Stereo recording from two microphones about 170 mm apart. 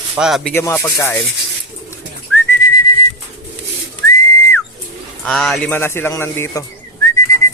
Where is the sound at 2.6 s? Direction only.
25° left (ahead or behind).